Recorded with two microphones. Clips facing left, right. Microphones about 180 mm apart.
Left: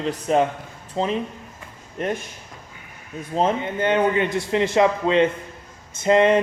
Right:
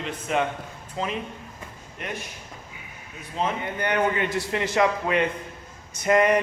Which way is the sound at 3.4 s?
20° left (ahead or behind).